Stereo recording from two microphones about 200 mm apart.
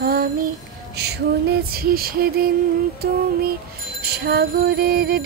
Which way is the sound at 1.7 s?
50° right (ahead or behind).